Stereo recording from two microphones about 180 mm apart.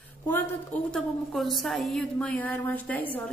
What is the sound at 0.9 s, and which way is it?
A woman's voice, centre (ahead or behind).